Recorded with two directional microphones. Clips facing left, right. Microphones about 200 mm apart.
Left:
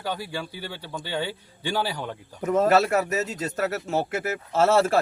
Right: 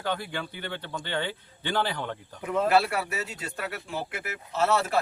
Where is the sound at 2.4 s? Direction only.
45° left (ahead or behind).